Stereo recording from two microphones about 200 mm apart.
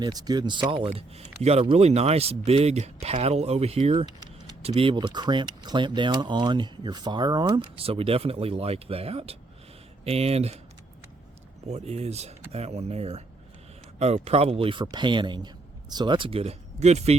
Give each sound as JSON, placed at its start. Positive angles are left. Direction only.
{"t": 0.0, "sound": "speech", "side_deg": -20}
{"t": 11.7, "sound": "speech", "side_deg": -30}